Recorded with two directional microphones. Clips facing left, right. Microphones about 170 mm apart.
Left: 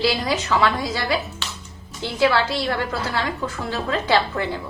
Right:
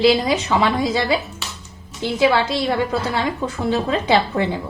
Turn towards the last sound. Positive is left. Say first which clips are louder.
# right 3 dB
turn(degrees=-20)  # may be behind; listen again after turning